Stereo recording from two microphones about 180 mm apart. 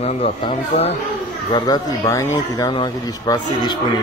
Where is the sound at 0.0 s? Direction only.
35° left (ahead or behind).